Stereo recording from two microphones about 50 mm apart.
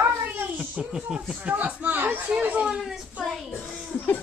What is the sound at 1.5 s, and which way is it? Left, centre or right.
Speech, right.